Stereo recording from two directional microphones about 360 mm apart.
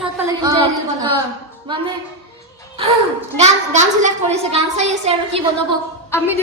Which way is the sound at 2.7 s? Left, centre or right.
Centre.